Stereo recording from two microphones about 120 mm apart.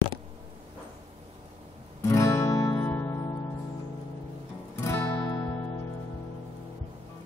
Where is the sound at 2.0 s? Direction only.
25° left (ahead or behind).